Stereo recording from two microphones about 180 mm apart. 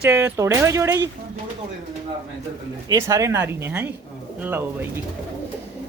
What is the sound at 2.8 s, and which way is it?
Speech, 15° right (ahead or behind).